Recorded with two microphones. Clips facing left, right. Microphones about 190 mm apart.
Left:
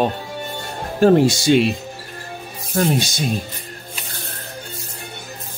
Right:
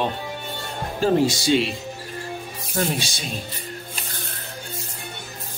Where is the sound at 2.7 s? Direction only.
50° left (ahead or behind).